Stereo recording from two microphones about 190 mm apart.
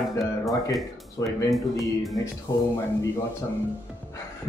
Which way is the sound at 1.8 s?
Centre (ahead or behind).